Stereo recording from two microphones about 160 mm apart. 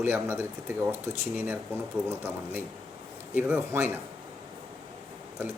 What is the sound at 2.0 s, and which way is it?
Speech, 10° right (ahead or behind).